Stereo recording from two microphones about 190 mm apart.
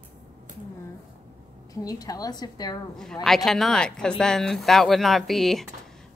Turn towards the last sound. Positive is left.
turn(degrees=0)  # may be behind; listen again after turning